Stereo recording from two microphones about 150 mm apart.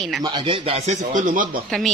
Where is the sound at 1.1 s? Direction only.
60° right (ahead or behind).